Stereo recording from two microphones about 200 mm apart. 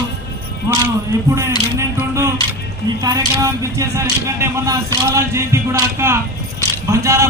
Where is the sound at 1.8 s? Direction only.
15° right (ahead or behind).